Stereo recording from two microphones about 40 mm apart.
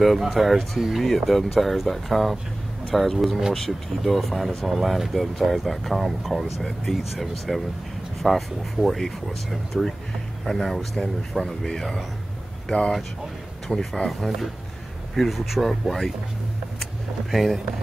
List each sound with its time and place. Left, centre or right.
0.0 s speech: centre
12.6 s speech: centre
16.8 s vehicle: centre